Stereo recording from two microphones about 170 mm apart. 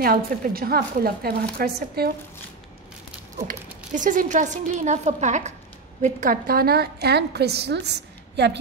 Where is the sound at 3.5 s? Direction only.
50° right (ahead or behind); by 8.6 s 90° right.